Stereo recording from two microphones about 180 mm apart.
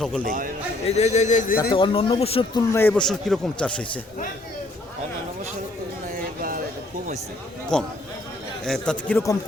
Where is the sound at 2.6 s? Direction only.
10° left (ahead or behind).